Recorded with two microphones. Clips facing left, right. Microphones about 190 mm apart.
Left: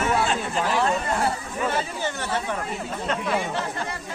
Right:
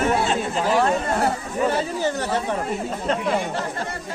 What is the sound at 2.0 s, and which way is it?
Speech, 40° right (ahead or behind).